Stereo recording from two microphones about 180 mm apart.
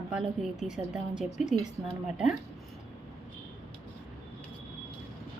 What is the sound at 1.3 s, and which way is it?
Speech, 40° left (ahead or behind).